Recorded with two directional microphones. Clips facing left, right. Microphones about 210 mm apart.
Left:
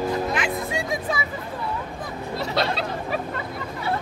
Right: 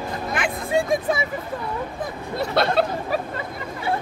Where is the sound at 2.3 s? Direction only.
55° right (ahead or behind).